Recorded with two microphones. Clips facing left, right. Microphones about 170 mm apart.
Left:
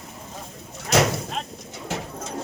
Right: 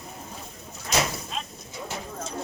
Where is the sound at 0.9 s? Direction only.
70° left (ahead or behind).